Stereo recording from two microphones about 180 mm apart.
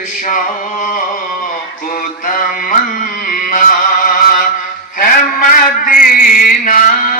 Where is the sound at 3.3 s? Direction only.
50° left (ahead or behind).